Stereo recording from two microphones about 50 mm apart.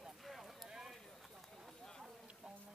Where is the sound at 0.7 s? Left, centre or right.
Centre.